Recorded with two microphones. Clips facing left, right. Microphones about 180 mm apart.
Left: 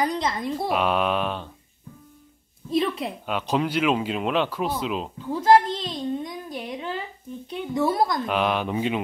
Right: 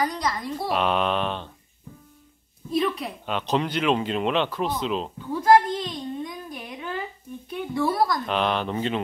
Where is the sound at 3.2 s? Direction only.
10° left (ahead or behind).